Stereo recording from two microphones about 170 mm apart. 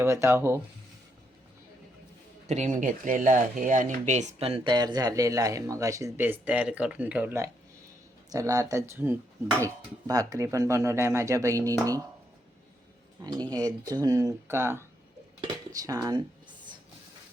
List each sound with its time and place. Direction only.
0.0 s speech: 15° right (ahead or behind)
2.5 s speech: 45° right (ahead or behind); by 11.7 s 20° right (ahead or behind)
13.2 s speech: 20° right (ahead or behind)